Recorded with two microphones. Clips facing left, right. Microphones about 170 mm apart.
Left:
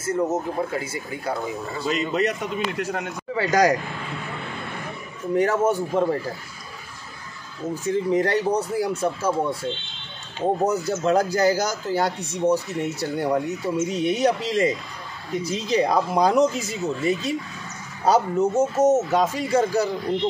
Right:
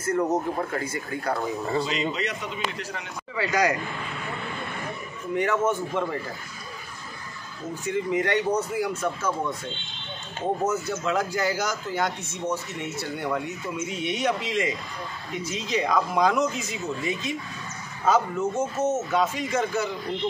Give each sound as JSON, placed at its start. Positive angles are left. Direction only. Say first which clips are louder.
{"t": 0.0, "sound": "speech", "louder": "left 1 dB", "side_deg": 10}
{"t": 1.9, "sound": "a man's voice", "louder": "left 5 dB", "side_deg": 50}
{"t": 5.3, "sound": "speech", "louder": "left 4 dB", "side_deg": 35}
{"t": 7.8, "sound": "speech", "louder": "left 4 dB", "side_deg": 35}
{"t": 10.6, "sound": "speech", "louder": "left 4 dB", "side_deg": 35}